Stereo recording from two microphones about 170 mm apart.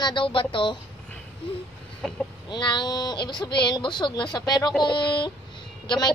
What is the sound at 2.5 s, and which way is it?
Speech, 25° left (ahead or behind).